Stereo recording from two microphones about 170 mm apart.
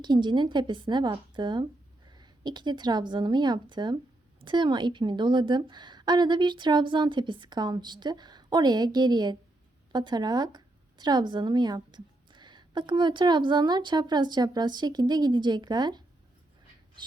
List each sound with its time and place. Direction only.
0.0 s a woman's voice: 25° right (ahead or behind)